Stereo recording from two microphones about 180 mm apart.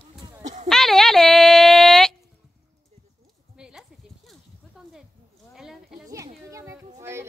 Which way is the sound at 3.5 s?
5° right (ahead or behind).